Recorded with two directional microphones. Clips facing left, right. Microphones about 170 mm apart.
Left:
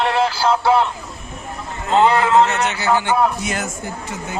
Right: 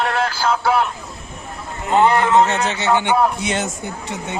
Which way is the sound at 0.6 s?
25° left (ahead or behind).